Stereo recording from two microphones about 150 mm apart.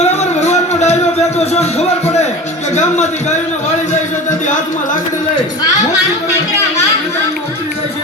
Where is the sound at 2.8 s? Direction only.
50° left (ahead or behind).